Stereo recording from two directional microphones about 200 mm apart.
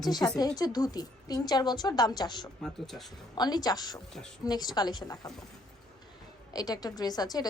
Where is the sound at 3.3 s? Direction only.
20° left (ahead or behind).